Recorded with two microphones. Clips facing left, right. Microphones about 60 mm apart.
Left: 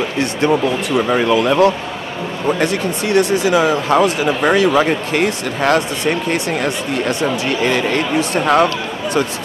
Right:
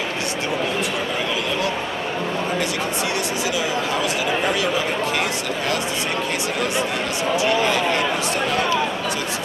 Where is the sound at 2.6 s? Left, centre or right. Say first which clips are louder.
Left 5 dB; left.